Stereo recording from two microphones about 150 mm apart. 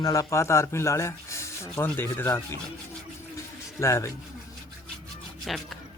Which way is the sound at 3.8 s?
20° left (ahead or behind).